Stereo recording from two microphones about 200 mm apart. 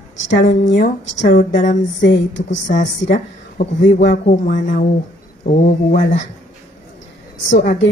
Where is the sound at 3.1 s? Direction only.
40° left (ahead or behind).